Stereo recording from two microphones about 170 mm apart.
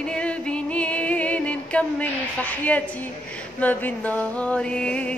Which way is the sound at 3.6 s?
10° left (ahead or behind).